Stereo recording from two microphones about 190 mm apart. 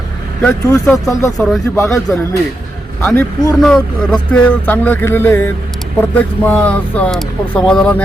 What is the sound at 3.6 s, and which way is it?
Speech, 5° left (ahead or behind).